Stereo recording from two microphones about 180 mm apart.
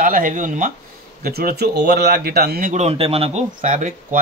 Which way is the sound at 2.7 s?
35° right (ahead or behind).